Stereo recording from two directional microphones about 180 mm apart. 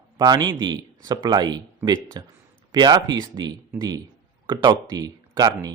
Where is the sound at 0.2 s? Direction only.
25° right (ahead or behind).